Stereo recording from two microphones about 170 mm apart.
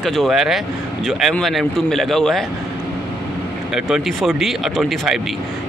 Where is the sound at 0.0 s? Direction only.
Centre (ahead or behind).